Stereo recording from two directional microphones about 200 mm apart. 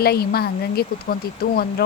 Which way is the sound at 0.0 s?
50° left (ahead or behind).